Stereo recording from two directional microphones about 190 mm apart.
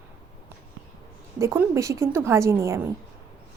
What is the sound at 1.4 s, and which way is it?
A woman's voice, 15° right (ahead or behind).